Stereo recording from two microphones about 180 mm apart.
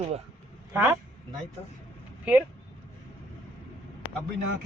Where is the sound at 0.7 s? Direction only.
10° right (ahead or behind).